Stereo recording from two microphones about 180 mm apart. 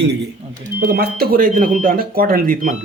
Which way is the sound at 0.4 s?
35° right (ahead or behind).